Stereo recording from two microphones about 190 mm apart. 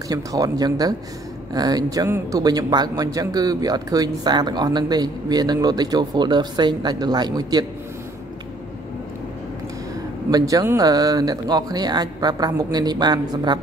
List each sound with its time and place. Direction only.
0.1 s speech: 20° right (ahead or behind)
10.3 s speech: 15° right (ahead or behind)